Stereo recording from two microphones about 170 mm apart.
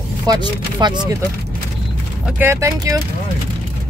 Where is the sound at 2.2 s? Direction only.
15° right (ahead or behind).